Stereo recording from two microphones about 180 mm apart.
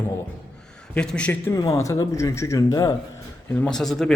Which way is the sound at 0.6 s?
5° left (ahead or behind).